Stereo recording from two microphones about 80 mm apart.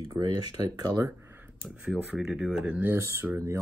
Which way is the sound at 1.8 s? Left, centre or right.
Centre.